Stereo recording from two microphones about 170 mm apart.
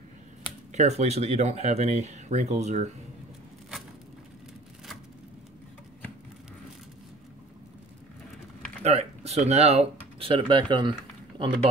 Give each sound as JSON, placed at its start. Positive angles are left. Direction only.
{"t": 0.7, "sound": "speech", "side_deg": -40}
{"t": 8.8, "sound": "speech", "side_deg": -40}